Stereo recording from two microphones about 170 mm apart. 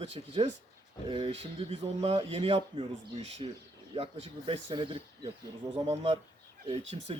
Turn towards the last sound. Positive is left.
turn(degrees=-35)  # may be behind; listen again after turning